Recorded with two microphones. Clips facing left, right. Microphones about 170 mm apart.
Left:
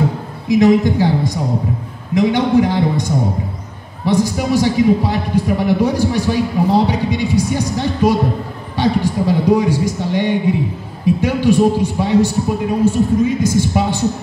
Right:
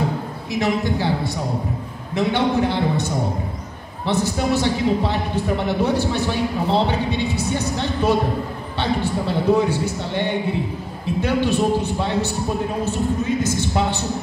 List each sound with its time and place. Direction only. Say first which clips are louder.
0.5 s a man's voice: left 10 dB; 15° left (ahead or behind)